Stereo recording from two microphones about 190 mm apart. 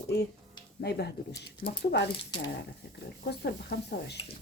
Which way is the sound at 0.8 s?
60° left (ahead or behind).